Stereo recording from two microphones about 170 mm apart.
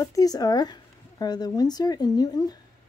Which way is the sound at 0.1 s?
20° left (ahead or behind).